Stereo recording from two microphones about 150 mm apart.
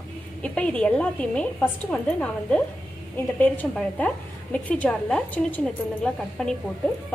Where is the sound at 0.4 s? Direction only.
5° left (ahead or behind).